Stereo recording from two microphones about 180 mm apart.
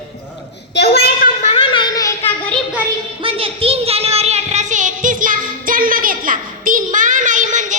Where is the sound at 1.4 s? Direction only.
35° left (ahead or behind).